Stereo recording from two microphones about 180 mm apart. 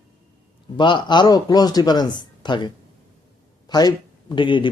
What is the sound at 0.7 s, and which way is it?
A man's voice, 25° left (ahead or behind).